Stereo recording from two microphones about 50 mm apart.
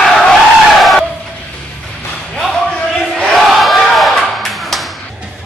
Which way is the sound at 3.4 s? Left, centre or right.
Centre.